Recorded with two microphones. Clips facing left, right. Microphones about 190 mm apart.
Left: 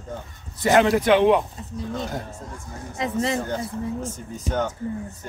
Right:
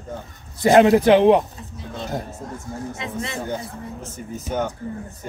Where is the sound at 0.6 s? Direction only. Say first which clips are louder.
Right 5 dB; 25° right (ahead or behind).